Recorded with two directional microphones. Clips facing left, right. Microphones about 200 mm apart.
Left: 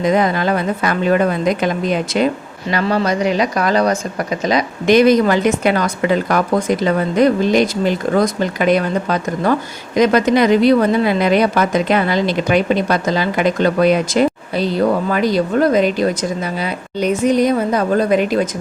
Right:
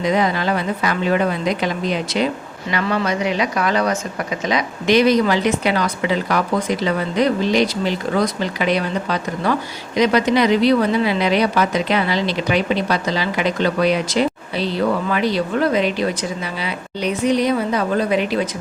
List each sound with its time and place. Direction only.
0.0 s a woman's voice: 50° left (ahead or behind)